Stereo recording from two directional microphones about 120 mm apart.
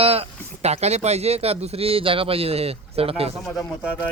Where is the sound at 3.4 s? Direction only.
Centre (ahead or behind).